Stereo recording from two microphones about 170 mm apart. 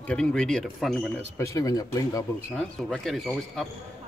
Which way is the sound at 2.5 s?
5° left (ahead or behind).